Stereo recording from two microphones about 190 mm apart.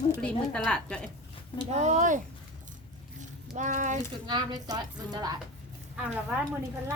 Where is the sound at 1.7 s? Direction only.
40° right (ahead or behind).